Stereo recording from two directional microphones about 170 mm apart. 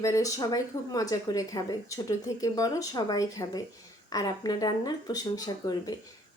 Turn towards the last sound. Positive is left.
turn(degrees=20)  # may be behind; listen again after turning